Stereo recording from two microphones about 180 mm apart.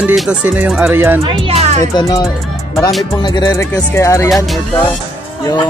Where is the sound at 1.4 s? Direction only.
35° right (ahead or behind).